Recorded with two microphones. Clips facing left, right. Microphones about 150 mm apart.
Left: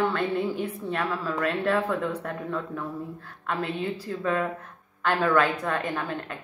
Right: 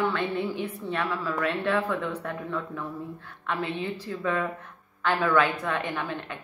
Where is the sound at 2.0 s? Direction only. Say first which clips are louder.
Left 2 dB; 10° left (ahead or behind).